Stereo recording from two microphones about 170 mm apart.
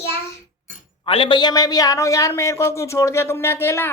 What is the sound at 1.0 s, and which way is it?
A man's voice, 35° left (ahead or behind).